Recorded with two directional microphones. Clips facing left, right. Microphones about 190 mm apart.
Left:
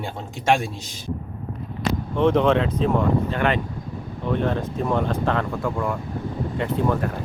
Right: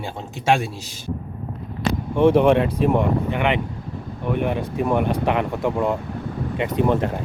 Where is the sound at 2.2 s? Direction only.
10° right (ahead or behind).